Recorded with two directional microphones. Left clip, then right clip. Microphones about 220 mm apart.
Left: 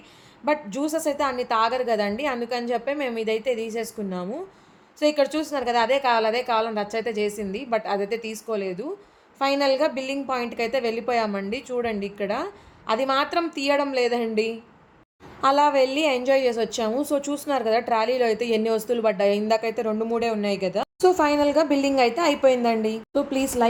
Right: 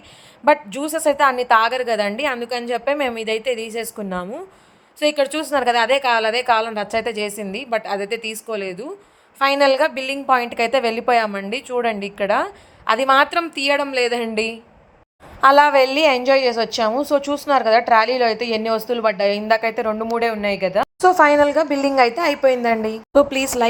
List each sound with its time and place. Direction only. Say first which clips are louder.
0.4 s a woman's voice: right 8 dB; 10° right (ahead or behind)